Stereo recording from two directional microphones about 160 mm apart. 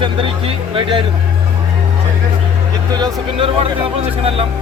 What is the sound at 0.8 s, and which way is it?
Speech, 30° right (ahead or behind).